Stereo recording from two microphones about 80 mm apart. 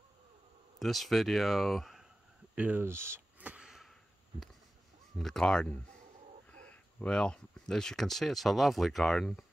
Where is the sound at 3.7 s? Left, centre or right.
Centre.